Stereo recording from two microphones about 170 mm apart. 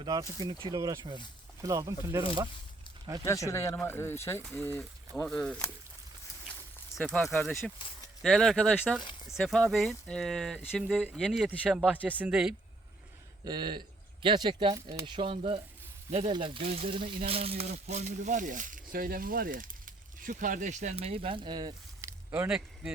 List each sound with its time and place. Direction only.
0.0 s speech: 20° right (ahead or behind)
3.2 s speech: 15° left (ahead or behind)
6.9 s speech: 5° left (ahead or behind)
13.4 s speech: 25° right (ahead or behind)
22.3 s speech: 5° right (ahead or behind)